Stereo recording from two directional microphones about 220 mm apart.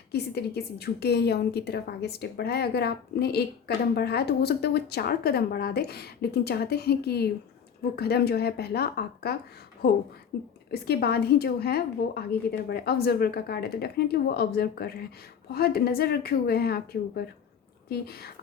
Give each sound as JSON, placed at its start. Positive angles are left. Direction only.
{"t": 0.1, "sound": "a woman's voice", "side_deg": 45}